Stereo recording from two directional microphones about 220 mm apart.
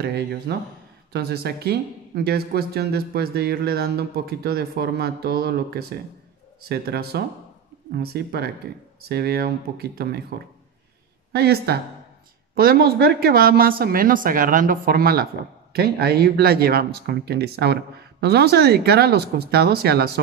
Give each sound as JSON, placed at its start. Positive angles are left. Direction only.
{"t": 0.0, "sound": "speech", "side_deg": -50}
{"t": 11.3, "sound": "speech", "side_deg": -45}